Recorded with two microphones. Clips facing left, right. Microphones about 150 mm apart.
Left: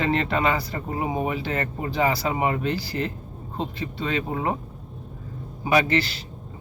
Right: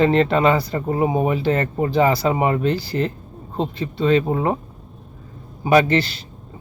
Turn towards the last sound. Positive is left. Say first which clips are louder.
# right 5 dB
turn(degrees=-30)  # may be behind; listen again after turning